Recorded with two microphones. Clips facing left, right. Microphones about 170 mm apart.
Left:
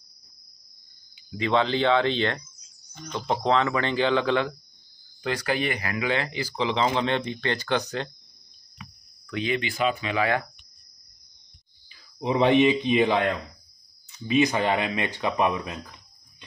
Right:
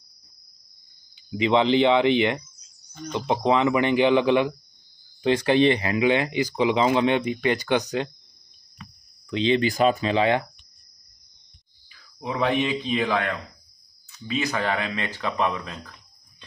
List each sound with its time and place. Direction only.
1.3 s speech: 15° right (ahead or behind)
9.3 s speech: 25° right (ahead or behind)
9.6 s speech: 40° right (ahead or behind)
10.1 s speech: 25° right (ahead or behind)
11.9 s speech: 20° left (ahead or behind)